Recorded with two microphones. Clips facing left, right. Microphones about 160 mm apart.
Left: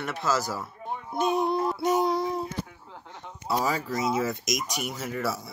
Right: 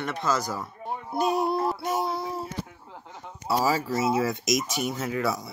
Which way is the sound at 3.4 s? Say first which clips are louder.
Right 3 dB; 5° right (ahead or behind).